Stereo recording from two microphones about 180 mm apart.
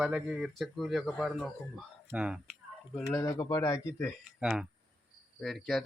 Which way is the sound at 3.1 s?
20° left (ahead or behind).